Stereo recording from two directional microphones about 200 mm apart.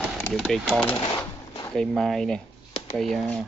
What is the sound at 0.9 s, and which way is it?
Cash register, 25° left (ahead or behind).